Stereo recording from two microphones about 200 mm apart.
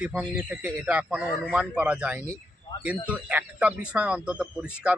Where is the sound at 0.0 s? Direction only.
5° right (ahead or behind).